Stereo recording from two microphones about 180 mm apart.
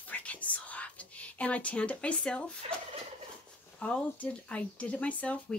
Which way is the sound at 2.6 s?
35° right (ahead or behind).